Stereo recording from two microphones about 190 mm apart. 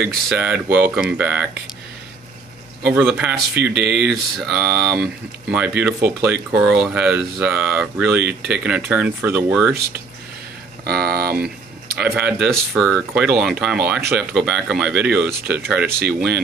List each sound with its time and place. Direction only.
0.1 s speech: 5° right (ahead or behind)
2.9 s speech: 10° right (ahead or behind)
10.8 s speech: 55° right (ahead or behind)
11.4 s a sound: 55° right (ahead or behind)
12.2 s speech: 5° right (ahead or behind)